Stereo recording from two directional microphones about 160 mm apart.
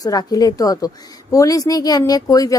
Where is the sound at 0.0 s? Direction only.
20° left (ahead or behind).